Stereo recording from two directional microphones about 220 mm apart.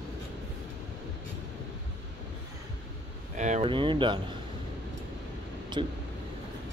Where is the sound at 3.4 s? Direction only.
30° right (ahead or behind).